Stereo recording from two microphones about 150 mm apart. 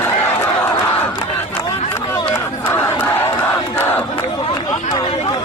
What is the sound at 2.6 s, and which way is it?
Crowd, 15° left (ahead or behind).